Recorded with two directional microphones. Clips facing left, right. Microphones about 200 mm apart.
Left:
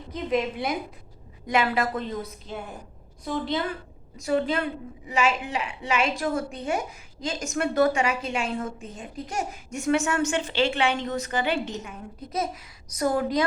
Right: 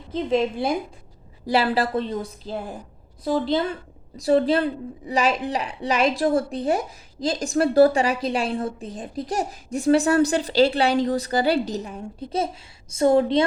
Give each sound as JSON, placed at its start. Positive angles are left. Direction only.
{"t": 0.1, "sound": "a woman's voice", "side_deg": -30}
{"t": 4.2, "sound": "a woman's voice", "side_deg": -35}